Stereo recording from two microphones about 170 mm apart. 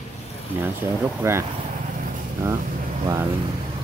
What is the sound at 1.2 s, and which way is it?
Speech, 15° right (ahead or behind).